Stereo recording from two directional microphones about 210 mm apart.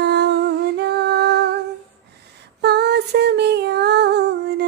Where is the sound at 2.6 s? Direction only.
50° right (ahead or behind).